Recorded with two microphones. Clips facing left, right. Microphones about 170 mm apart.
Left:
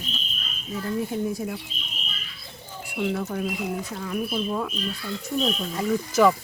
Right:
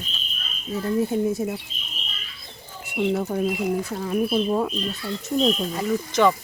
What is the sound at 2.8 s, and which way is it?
Speech, 25° right (ahead or behind).